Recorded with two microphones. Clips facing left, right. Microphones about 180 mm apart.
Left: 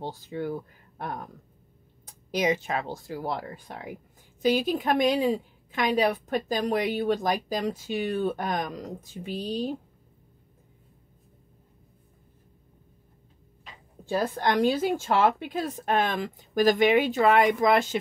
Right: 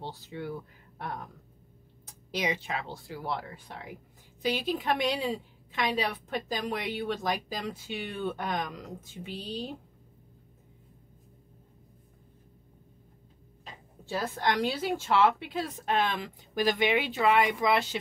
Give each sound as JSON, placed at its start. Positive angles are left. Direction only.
{"t": 0.0, "sound": "speech", "side_deg": 45}
{"t": 2.3, "sound": "a woman's voice", "side_deg": 45}
{"t": 14.0, "sound": "a woman's voice", "side_deg": 50}